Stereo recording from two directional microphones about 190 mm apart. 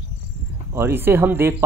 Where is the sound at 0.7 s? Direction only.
10° right (ahead or behind).